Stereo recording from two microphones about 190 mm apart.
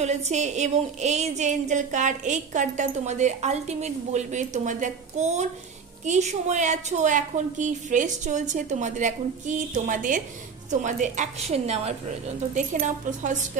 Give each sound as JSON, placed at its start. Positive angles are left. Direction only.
{"t": 0.0, "sound": "a woman's voice", "side_deg": -35}